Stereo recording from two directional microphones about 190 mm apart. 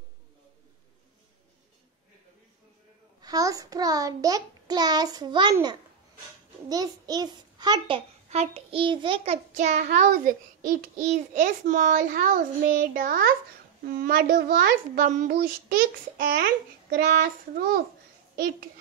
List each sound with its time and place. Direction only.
3.2 s a child's voice: 20° right (ahead or behind); by 17.6 s 55° right (ahead or behind)